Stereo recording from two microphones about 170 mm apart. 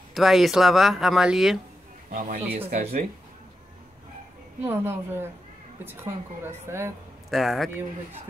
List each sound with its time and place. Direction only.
0.1 s speech: centre (ahead or behind)
2.0 s speech: 50° right (ahead or behind)
4.6 s a woman's voice: 15° right (ahead or behind)
7.2 s a man's voice: centre (ahead or behind)